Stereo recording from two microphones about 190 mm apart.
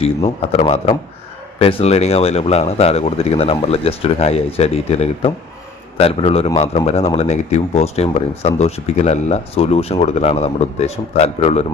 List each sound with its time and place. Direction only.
0.0 s speech: 35° left (ahead or behind)